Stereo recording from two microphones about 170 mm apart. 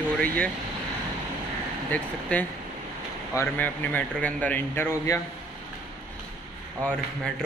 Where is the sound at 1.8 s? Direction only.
10° left (ahead or behind).